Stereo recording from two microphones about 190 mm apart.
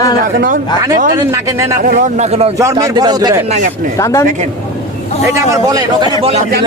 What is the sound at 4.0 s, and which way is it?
Speech, 15° left (ahead or behind).